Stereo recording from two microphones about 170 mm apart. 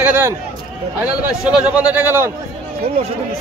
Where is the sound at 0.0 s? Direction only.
10° right (ahead or behind).